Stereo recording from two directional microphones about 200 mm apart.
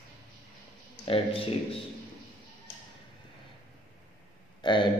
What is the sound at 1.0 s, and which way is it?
Speech, 25° left (ahead or behind).